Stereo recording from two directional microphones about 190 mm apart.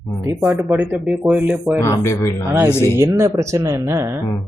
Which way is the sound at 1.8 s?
15° left (ahead or behind).